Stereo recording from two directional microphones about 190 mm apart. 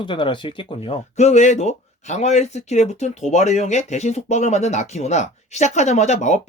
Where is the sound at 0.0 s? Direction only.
25° left (ahead or behind).